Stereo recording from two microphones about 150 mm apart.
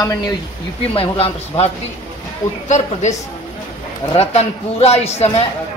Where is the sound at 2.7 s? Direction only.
50° left (ahead or behind).